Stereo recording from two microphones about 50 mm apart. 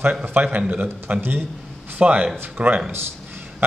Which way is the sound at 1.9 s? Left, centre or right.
Right.